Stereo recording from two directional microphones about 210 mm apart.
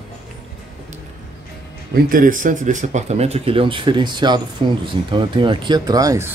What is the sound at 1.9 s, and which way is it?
Speech, 40° right (ahead or behind).